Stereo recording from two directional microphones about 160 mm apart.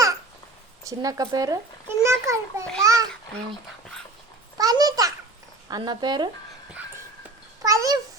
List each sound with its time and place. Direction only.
0.9 s a child's voice: 20° right (ahead or behind)
2.8 s babbling: 20° right (ahead or behind)
4.5 s babbling: 25° right (ahead or behind)
5.6 s speech: 25° right (ahead or behind)
7.6 s babbling: 20° right (ahead or behind)